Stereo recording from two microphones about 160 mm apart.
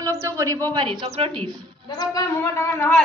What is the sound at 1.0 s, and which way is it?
Speech, 40° right (ahead or behind).